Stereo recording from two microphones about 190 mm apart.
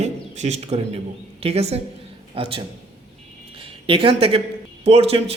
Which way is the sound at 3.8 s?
30° right (ahead or behind).